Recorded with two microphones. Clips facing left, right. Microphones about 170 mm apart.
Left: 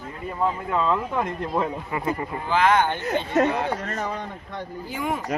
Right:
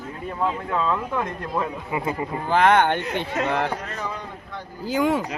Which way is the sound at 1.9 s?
15° right (ahead or behind).